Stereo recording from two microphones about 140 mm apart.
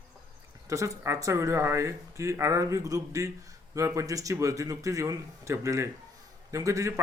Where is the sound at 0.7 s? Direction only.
20° right (ahead or behind).